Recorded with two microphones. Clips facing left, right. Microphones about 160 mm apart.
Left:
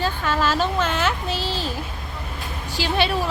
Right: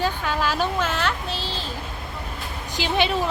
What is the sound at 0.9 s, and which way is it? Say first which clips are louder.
Speech: left 2 dB; 5° left (ahead or behind).